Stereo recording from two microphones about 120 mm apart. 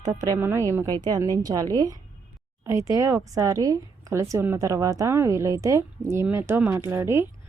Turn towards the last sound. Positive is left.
turn(degrees=-20)  # may be behind; listen again after turning